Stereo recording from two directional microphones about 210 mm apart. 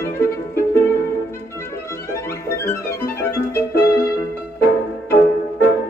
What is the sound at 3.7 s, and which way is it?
Music, 45° left (ahead or behind).